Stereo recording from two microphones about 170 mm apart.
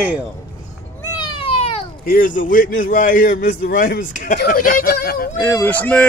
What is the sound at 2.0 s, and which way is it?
A man's voice, 55° left (ahead or behind).